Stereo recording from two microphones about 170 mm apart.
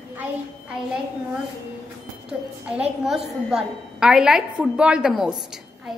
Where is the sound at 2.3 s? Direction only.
5° right (ahead or behind).